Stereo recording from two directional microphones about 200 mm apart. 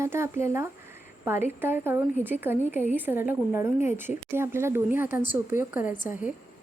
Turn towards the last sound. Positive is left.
turn(degrees=-10)  # may be behind; listen again after turning